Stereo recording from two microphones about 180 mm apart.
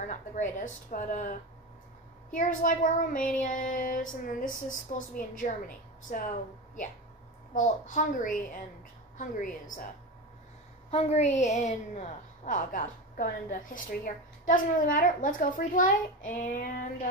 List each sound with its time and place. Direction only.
0.0 s child singing: 45° left (ahead or behind)
2.3 s child singing: 45° left (ahead or behind)
7.5 s child singing: 45° left (ahead or behind)
10.9 s a woman's voice: 35° left (ahead or behind)
14.0 s child singing: 45° left (ahead or behind)